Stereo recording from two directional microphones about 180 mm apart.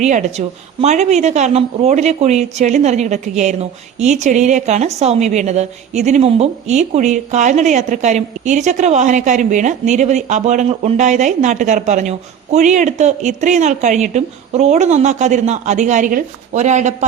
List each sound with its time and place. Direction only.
0.0 s a woman's voice: 40° right (ahead or behind)